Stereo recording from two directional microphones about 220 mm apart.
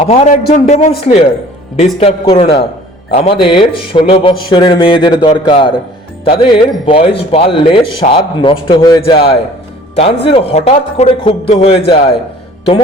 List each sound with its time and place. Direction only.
0.0 s a man's voice: 30° left (ahead or behind)